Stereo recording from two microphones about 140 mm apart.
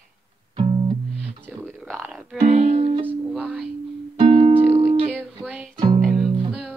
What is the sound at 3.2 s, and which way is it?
Music, 5° right (ahead or behind).